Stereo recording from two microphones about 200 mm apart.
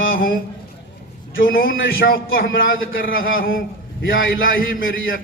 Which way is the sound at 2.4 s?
75° left (ahead or behind).